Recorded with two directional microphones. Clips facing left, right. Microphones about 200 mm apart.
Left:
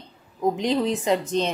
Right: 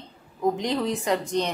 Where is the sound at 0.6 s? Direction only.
20° left (ahead or behind).